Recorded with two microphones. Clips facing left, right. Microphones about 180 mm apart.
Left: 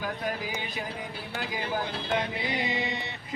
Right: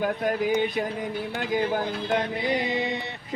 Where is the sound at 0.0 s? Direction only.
55° right (ahead or behind).